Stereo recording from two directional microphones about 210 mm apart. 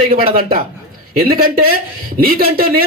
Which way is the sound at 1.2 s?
45° right (ahead or behind).